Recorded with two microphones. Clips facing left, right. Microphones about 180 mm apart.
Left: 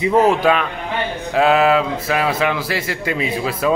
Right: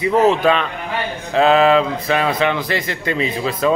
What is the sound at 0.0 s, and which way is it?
Speech, 15° left (ahead or behind).